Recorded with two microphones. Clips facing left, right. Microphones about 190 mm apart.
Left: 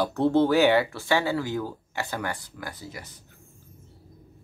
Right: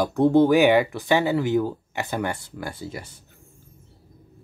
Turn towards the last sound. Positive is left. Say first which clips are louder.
# right 5 dB
turn(degrees=-30)  # may be behind; listen again after turning